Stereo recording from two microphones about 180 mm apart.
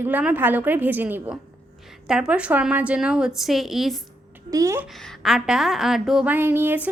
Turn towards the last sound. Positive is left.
turn(degrees=-10)  # may be behind; listen again after turning